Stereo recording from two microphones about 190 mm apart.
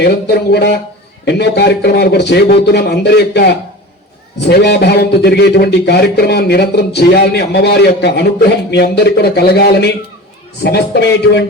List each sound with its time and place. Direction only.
0.0 s a man's voice: 60° left (ahead or behind)